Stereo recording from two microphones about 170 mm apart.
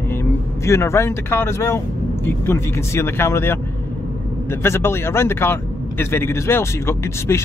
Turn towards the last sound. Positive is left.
turn(degrees=15)  # may be behind; listen again after turning